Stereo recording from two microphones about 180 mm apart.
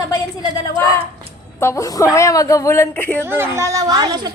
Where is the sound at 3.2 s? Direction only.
15° right (ahead or behind).